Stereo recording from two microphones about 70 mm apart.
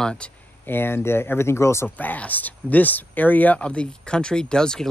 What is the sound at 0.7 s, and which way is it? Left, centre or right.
Speech, left.